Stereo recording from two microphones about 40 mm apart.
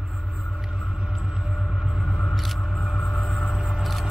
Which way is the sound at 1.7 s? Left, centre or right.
Centre.